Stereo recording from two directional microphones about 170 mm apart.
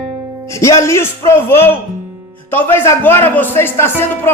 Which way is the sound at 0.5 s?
15° left (ahead or behind).